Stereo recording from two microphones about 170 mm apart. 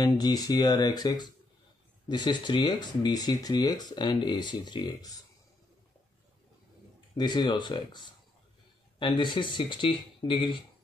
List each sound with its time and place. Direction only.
0.0 s speech: 20° left (ahead or behind)
7.2 s speech: 25° left (ahead or behind)
9.0 s speech: 30° left (ahead or behind)